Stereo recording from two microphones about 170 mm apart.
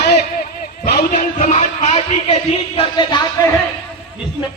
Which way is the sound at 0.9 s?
45° left (ahead or behind).